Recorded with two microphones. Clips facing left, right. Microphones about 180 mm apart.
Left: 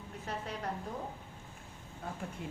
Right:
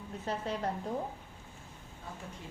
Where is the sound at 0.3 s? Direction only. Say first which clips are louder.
Right 5 dB; 30° right (ahead or behind).